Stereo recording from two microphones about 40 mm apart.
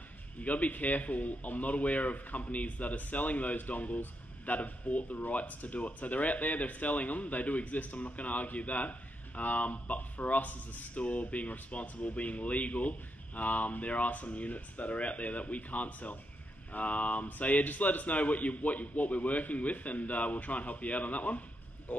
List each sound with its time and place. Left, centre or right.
0.4 s speech: left